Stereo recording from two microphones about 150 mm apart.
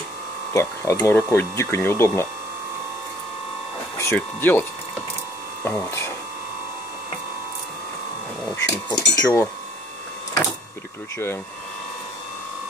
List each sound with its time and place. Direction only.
0.5 s speech: 20° left (ahead or behind)
4.0 s speech: 15° left (ahead or behind)
8.6 s speech: 20° left (ahead or behind)